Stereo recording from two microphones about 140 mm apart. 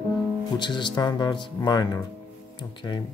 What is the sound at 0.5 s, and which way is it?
Speech, 35° left (ahead or behind).